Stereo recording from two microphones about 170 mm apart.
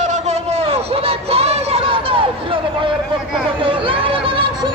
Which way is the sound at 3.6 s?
30° right (ahead or behind).